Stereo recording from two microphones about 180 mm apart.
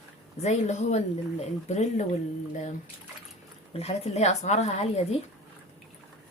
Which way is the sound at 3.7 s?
35° left (ahead or behind).